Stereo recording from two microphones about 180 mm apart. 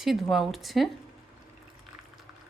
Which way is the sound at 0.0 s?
Centre (ahead or behind).